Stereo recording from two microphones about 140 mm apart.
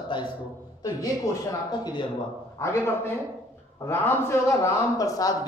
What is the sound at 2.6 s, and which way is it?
A man's voice, 15° left (ahead or behind).